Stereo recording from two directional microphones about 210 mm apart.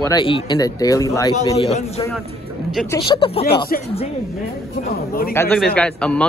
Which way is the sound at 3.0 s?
25° left (ahead or behind).